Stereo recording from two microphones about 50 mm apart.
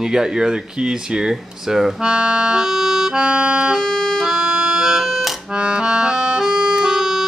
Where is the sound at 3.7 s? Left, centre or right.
Centre.